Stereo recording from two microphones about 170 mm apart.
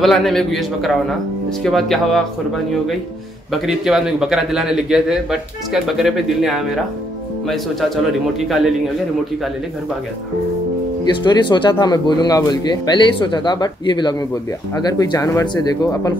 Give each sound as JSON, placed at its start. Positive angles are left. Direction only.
{"t": 0.0, "sound": "a man's voice", "side_deg": 0}
{"t": 11.1, "sound": "speech", "side_deg": 25}